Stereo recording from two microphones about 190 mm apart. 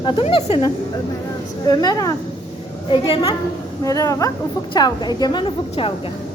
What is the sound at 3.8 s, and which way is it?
A woman's voice, 15° left (ahead or behind).